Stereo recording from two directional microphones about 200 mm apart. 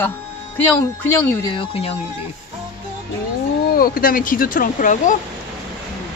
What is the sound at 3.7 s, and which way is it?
Speech, 45° left (ahead or behind).